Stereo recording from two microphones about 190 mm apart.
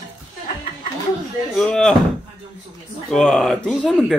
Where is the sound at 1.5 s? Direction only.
5° left (ahead or behind).